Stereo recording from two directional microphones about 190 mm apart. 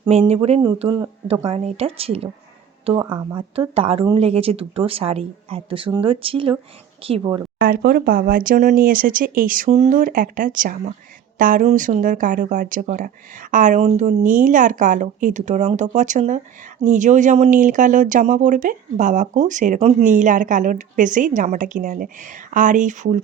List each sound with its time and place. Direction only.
0.0 s speech: 35° right (ahead or behind)
1.3 s a woman's voice: 30° right (ahead or behind)
2.9 s speech: 20° right (ahead or behind)
7.6 s a woman's voice: 50° right (ahead or behind)